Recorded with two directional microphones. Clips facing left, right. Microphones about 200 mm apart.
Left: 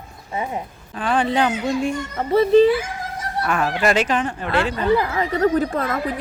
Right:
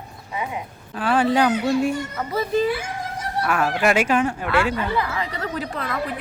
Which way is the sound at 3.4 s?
5° right (ahead or behind).